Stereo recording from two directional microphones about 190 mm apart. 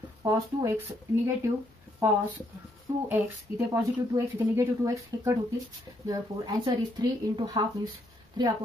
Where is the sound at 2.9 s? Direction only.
15° right (ahead or behind).